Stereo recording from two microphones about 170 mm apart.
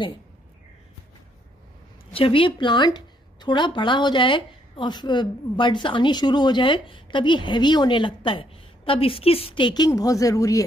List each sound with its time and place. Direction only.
2.1 s speech: 30° left (ahead or behind)